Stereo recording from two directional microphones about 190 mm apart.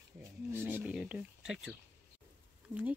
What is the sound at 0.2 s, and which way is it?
Wild animals, 10° right (ahead or behind).